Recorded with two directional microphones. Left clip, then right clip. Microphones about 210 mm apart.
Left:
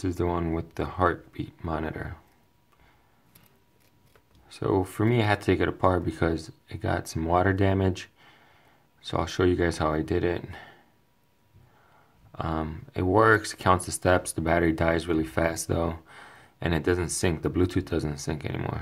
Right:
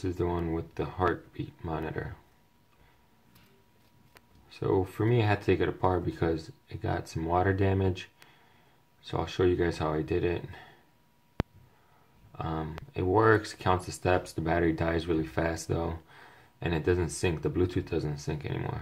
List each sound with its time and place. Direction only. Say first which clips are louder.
0.0 s speech: left 3 dB; 30° left (ahead or behind)
4.5 s speech: left 2 dB; 30° left (ahead or behind)
12.3 s speech: left 4 dB; 30° left (ahead or behind)